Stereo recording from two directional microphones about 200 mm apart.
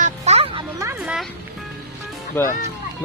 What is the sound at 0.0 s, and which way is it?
Music, 35° right (ahead or behind).